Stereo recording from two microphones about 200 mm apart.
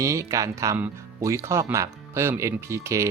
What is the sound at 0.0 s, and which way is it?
Speech, 15° right (ahead or behind).